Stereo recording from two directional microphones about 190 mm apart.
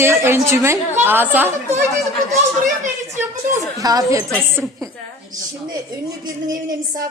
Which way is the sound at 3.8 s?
20° right (ahead or behind).